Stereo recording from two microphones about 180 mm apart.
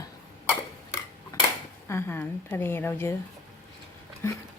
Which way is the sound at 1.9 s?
15° left (ahead or behind).